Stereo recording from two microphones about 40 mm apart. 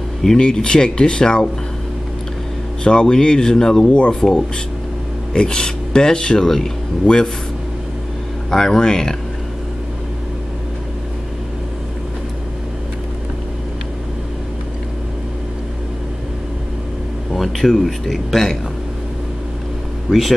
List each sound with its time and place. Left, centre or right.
0.4 s speech: left
2.8 s speech: centre
8.5 s speech: centre
17.3 s a man's voice: centre
20.1 s speech: centre